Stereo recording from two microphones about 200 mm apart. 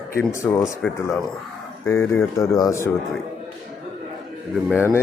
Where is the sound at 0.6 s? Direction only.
Centre (ahead or behind).